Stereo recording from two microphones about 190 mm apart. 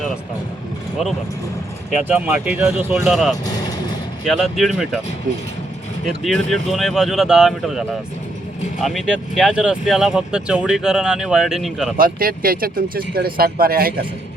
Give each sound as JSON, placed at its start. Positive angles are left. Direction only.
{"t": 2.0, "sound": "speech", "side_deg": -10}
{"t": 6.1, "sound": "speech", "side_deg": 0}
{"t": 11.9, "sound": "speech", "side_deg": -50}